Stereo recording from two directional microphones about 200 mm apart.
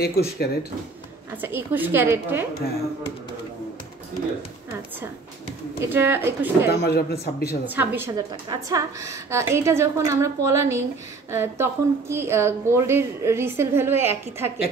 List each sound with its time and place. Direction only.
0.0 s a man's voice: 50° left (ahead or behind)
1.3 s a woman's voice: 10° right (ahead or behind)
5.8 s a woman's voice: 10° right (ahead or behind)
6.7 s a man's voice: 55° left (ahead or behind)
7.6 s a woman's voice: 10° right (ahead or behind)